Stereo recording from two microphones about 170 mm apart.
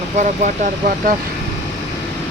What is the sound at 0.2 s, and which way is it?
Speech, 45° right (ahead or behind).